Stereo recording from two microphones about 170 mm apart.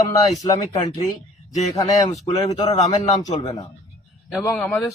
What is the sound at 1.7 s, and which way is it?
Speech, 20° left (ahead or behind).